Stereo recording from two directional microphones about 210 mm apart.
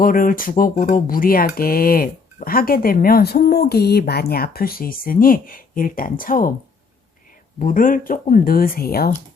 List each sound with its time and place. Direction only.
0.0 s speech: 40° left (ahead or behind)
7.6 s speech: 40° left (ahead or behind)